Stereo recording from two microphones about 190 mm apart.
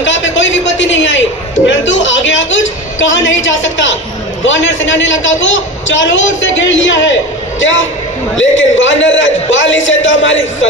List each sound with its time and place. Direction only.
0.0 s a sound: 80° left
4.5 s a woman's voice: 80° left
8.4 s a woman's voice: 80° left